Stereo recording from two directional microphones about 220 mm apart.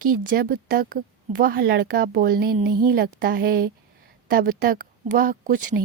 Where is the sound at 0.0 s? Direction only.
40° right (ahead or behind).